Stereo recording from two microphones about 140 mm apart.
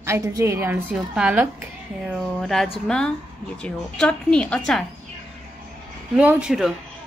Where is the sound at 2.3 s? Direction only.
Centre (ahead or behind).